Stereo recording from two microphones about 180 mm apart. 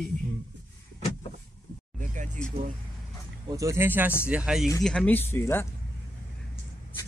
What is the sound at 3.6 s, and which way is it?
A man's voice, 15° right (ahead or behind).